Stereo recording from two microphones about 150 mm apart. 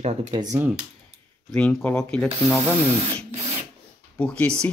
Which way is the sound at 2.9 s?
40° right (ahead or behind).